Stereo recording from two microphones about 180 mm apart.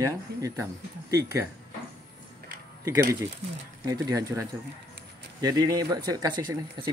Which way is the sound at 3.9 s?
20° right (ahead or behind).